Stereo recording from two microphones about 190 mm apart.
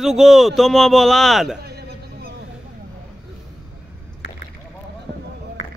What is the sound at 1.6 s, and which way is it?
Music, 55° right (ahead or behind).